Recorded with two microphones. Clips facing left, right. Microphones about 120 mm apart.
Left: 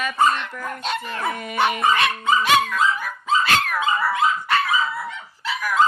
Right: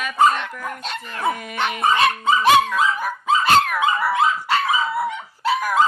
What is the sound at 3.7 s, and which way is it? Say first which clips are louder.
Dog: right 2 dB; 10° right (ahead or behind).